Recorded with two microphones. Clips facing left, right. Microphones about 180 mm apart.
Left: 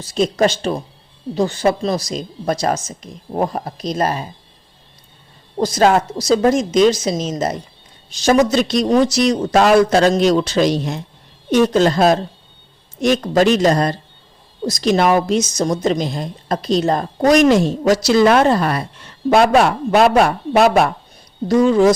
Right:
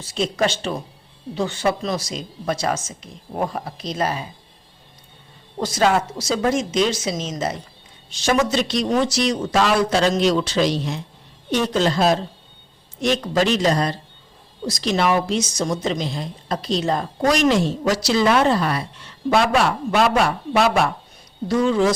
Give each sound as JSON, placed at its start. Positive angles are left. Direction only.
{"t": 0.0, "sound": "speech", "side_deg": 40}
{"t": 5.5, "sound": "a woman's voice", "side_deg": 40}